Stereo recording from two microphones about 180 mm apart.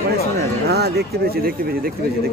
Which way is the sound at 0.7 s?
65° right (ahead or behind).